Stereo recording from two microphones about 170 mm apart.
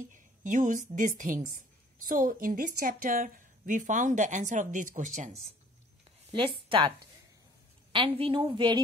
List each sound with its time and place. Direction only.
0.1 s a woman's voice: 50° right (ahead or behind)
6.3 s speech: 30° right (ahead or behind)
7.9 s a woman's voice: 35° right (ahead or behind)